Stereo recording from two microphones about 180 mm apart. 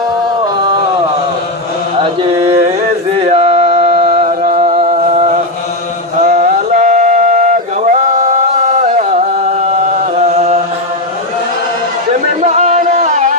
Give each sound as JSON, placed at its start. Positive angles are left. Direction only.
{"t": 2.0, "sound": "mantra", "side_deg": -30}
{"t": 6.1, "sound": "a sound", "side_deg": -45}
{"t": 12.4, "sound": "music", "side_deg": -40}